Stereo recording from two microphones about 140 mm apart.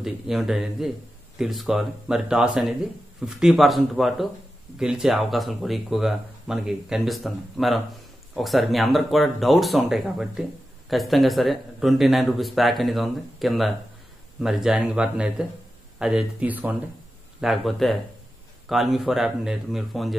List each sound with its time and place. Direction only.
0.0 s speech: centre (ahead or behind)